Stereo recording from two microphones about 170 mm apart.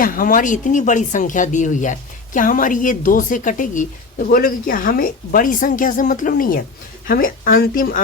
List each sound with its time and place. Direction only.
0.0 s speech: 55° left (ahead or behind)